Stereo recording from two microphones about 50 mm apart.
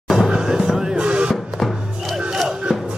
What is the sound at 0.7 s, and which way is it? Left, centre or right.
Music, centre.